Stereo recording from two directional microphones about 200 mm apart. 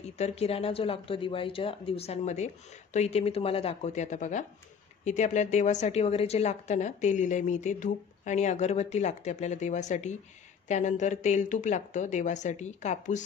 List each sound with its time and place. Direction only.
0.2 s a woman's voice: 30° left (ahead or behind)